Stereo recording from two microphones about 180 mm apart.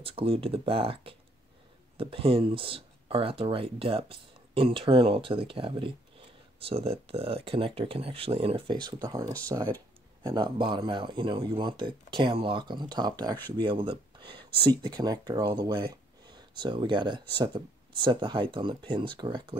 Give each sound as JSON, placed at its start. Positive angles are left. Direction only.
{"t": 0.0, "sound": "speech", "side_deg": -30}